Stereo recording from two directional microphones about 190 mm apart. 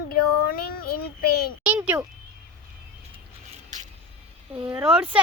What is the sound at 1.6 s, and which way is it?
Speech, 10° right (ahead or behind).